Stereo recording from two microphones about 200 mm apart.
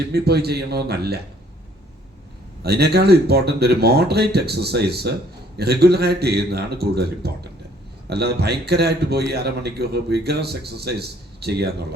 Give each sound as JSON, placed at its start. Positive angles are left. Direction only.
{"t": 0.0, "sound": "a man's voice", "side_deg": -55}
{"t": 2.6, "sound": "a man's voice", "side_deg": -55}